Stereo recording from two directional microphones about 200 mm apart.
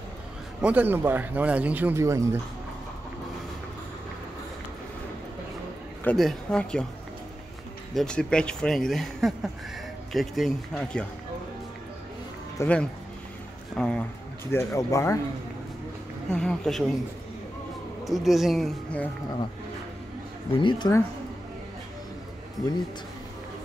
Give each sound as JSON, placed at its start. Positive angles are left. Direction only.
{"t": 0.6, "sound": "speech", "side_deg": -5}
{"t": 6.0, "sound": "speech", "side_deg": 0}
{"t": 7.9, "sound": "speech", "side_deg": 5}
{"t": 12.5, "sound": "speech", "side_deg": 5}
{"t": 16.3, "sound": "speech", "side_deg": 5}
{"t": 18.0, "sound": "speech", "side_deg": 0}
{"t": 20.5, "sound": "speech", "side_deg": 20}